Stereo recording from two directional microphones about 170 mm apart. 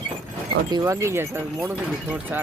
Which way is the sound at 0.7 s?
15° right (ahead or behind).